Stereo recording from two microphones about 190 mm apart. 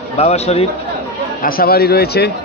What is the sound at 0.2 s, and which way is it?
Speech, 35° left (ahead or behind).